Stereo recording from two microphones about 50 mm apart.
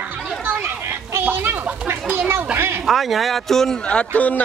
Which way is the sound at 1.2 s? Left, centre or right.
Right.